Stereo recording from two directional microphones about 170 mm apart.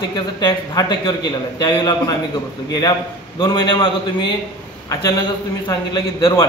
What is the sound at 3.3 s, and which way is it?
Speech, 25° left (ahead or behind).